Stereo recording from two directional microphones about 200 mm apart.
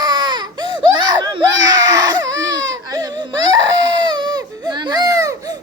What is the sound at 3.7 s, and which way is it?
Baby cry, 20° right (ahead or behind).